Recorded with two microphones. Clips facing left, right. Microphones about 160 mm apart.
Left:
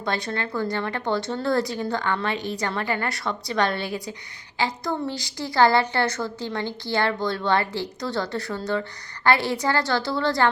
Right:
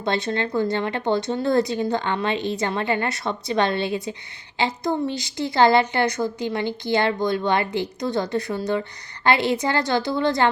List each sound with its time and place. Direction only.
0.0 s a woman's voice: 25° right (ahead or behind)